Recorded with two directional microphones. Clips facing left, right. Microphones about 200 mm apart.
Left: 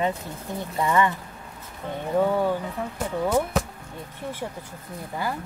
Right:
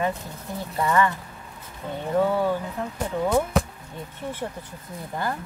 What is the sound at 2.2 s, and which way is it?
Speech, 15° left (ahead or behind).